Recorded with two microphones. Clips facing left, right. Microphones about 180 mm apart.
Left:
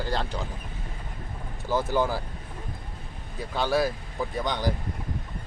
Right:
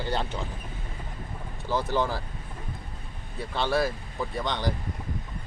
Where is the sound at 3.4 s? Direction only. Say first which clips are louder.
Left 1 dB; 5° left (ahead or behind).